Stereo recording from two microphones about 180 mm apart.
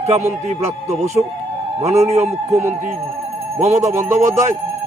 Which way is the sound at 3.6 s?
35° right (ahead or behind).